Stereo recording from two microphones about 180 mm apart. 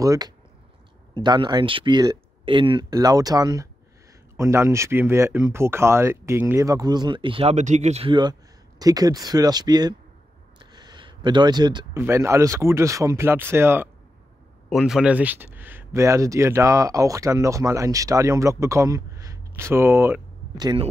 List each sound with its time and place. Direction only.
0.0 s speech: 20° right (ahead or behind)
10.7 s a sound: 25° right (ahead or behind)
12.0 s speech: 15° right (ahead or behind)